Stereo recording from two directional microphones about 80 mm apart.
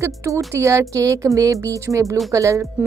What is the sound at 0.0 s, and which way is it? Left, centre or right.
Speech, right.